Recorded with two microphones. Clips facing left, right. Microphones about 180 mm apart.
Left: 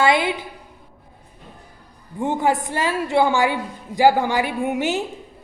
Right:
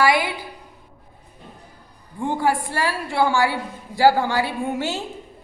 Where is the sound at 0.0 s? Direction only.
20° left (ahead or behind).